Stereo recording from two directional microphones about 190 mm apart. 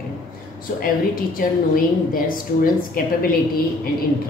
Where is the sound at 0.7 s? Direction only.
50° left (ahead or behind).